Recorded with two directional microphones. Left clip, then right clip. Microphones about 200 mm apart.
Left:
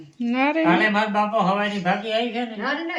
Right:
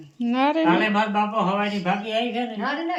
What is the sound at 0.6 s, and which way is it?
Speech, 40° left (ahead or behind).